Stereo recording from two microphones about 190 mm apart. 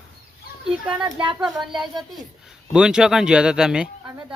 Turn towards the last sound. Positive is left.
turn(degrees=-5)  # may be behind; listen again after turning